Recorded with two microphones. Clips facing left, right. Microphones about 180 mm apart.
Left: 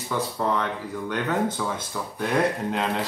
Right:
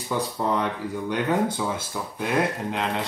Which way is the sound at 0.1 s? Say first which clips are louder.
Even; 15° right (ahead or behind).